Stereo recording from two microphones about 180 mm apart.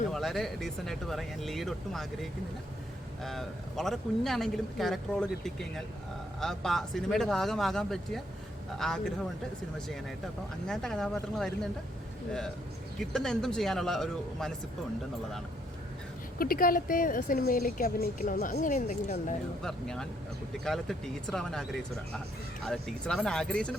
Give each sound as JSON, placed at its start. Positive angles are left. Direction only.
{"t": 0.1, "sound": "speech", "side_deg": 0}
{"t": 3.2, "sound": "speech", "side_deg": 0}
{"t": 10.7, "sound": "speech", "side_deg": 5}
{"t": 13.0, "sound": "speech", "side_deg": 0}
{"t": 16.4, "sound": "speech", "side_deg": 55}
{"t": 19.6, "sound": "speech", "side_deg": 5}
{"t": 22.6, "sound": "speech", "side_deg": 5}